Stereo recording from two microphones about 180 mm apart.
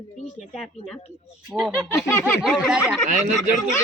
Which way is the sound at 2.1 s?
15° left (ahead or behind).